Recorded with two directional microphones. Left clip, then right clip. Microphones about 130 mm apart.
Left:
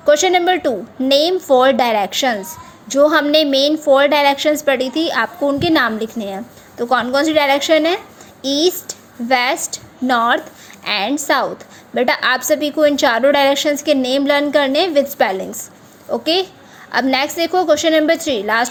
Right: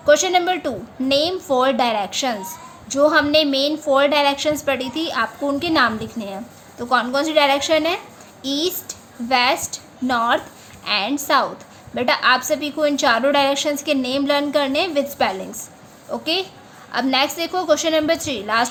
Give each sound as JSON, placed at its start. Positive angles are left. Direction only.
{"t": 0.0, "sound": "a woman's voice", "side_deg": 35}